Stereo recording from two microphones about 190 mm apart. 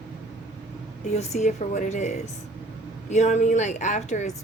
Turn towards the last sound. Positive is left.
turn(degrees=40)  # may be behind; listen again after turning